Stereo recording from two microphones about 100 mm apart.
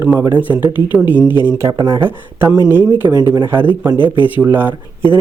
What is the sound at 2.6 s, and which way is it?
Speech, 20° right (ahead or behind).